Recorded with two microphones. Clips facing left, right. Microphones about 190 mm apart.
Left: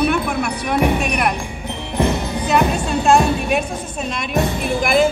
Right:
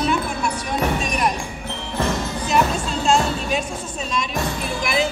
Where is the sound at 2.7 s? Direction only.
60° left (ahead or behind).